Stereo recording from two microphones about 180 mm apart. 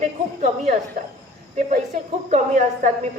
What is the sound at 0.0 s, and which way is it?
Speech, 40° right (ahead or behind).